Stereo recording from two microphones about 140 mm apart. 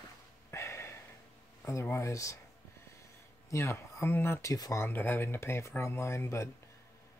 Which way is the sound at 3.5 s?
20° left (ahead or behind).